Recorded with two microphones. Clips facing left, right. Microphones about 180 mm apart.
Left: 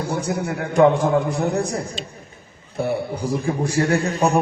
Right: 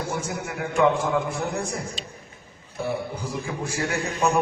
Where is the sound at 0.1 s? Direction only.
35° left (ahead or behind).